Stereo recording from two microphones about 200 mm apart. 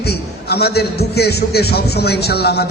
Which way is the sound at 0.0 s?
55° left (ahead or behind).